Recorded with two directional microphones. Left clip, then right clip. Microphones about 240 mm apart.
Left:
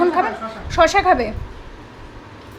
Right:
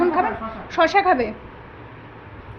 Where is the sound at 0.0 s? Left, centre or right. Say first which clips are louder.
Left 2 dB; centre.